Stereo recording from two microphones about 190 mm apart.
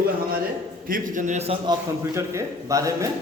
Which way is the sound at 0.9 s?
40° right (ahead or behind).